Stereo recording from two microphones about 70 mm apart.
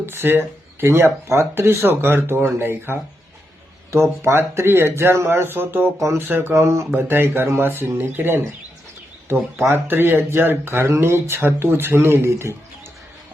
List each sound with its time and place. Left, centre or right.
0.0 s speech: right
4.2 s speech: right
6.9 s speech: right
9.6 s speech: right